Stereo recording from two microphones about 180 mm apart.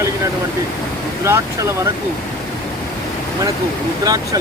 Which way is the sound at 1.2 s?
15° right (ahead or behind).